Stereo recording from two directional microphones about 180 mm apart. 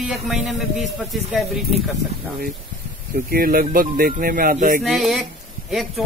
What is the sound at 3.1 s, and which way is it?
Speech, 55° right (ahead or behind).